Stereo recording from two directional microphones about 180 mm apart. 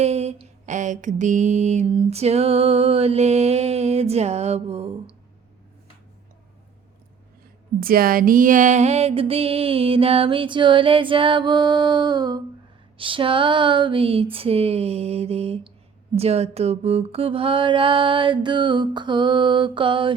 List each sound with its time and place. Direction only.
0.0 s mantra: 35° right (ahead or behind)
7.8 s mantra: 55° right (ahead or behind); by 20.1 s 30° right (ahead or behind)